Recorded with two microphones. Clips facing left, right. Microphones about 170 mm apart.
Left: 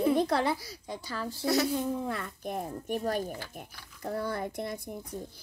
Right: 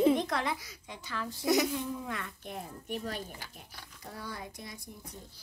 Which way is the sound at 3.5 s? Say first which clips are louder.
Left 6 dB; 55° left (ahead or behind).